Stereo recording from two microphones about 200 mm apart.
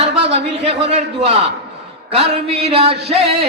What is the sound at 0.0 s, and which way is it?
Speech, 30° right (ahead or behind).